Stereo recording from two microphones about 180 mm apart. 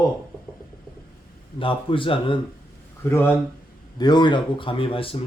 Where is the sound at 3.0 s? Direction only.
15° left (ahead or behind).